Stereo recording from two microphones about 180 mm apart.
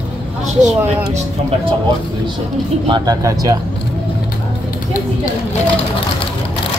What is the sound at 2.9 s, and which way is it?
Speech, 20° right (ahead or behind).